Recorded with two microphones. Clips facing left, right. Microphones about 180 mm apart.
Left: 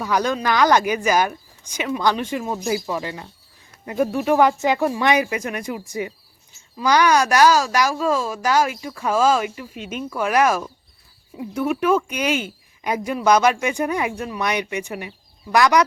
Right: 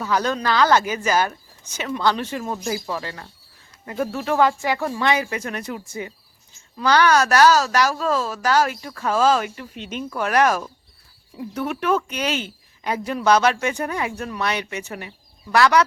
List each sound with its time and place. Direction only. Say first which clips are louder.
0.0 s a woman's voice: left 1 dB; 15° left (ahead or behind)